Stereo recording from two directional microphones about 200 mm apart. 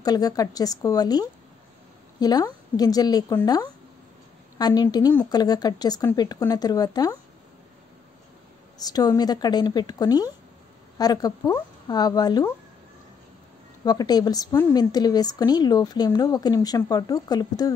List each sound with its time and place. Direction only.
0.0 s a woman's voice: 20° left (ahead or behind)
4.6 s a woman's voice: 20° left (ahead or behind)
8.7 s a woman's voice: 20° left (ahead or behind)
13.8 s a woman's voice: 20° left (ahead or behind)